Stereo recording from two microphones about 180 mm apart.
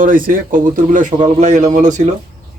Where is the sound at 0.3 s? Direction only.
45° right (ahead or behind).